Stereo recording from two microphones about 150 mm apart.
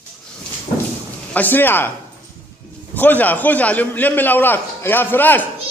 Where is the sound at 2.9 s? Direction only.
10° left (ahead or behind).